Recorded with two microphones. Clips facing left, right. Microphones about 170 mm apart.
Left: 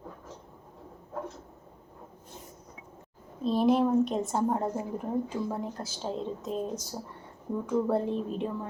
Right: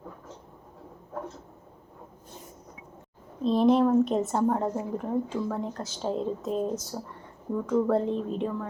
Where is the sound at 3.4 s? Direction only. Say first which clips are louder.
Right 3 dB; 5° left (ahead or behind).